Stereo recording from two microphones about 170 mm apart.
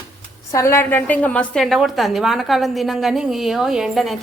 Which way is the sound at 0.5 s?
15° left (ahead or behind).